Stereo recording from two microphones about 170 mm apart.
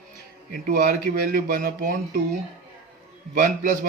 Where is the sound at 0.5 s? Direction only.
60° right (ahead or behind).